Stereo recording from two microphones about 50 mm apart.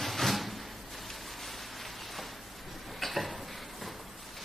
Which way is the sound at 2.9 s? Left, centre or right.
Centre.